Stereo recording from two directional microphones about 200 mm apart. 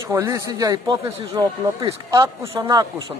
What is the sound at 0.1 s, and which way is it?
A man's voice, 15° right (ahead or behind).